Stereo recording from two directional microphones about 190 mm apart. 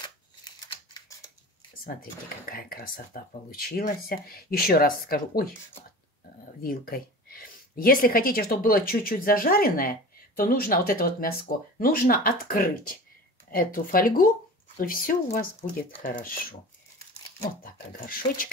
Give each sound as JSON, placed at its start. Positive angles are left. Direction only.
{"t": 2.0, "sound": "speech", "side_deg": 50}
{"t": 6.6, "sound": "speech", "side_deg": 50}
{"t": 17.6, "sound": "speech", "side_deg": 50}